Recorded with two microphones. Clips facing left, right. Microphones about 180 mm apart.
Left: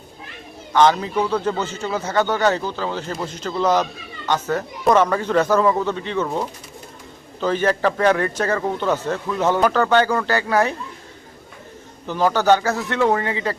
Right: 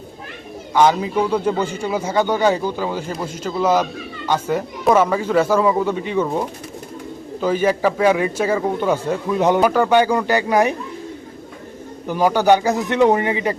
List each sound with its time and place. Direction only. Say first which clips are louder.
0.7 s a man's voice: right 1 dB; 10° right (ahead or behind)
12.0 s a man's voice: right 2 dB; 10° right (ahead or behind)